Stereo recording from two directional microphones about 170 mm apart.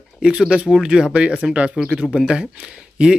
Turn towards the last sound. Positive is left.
turn(degrees=-5)  # may be behind; listen again after turning